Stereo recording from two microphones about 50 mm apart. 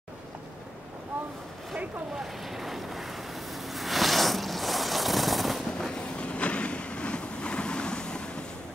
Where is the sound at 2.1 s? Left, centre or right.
Centre.